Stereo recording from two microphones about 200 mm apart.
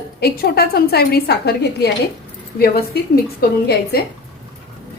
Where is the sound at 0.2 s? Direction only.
50° left (ahead or behind).